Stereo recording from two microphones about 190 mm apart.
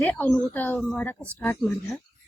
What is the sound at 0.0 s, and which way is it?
A woman's voice, 10° left (ahead or behind).